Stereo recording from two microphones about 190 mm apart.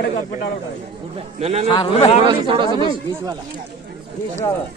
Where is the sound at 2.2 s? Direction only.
25° right (ahead or behind).